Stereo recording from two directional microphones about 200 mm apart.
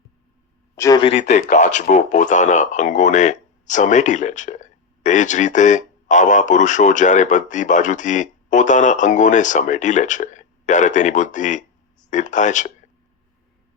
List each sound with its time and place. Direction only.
0.8 s speech: 20° left (ahead or behind); by 12.7 s 40° left (ahead or behind)